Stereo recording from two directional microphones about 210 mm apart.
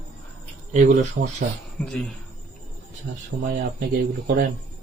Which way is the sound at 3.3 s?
35° right (ahead or behind).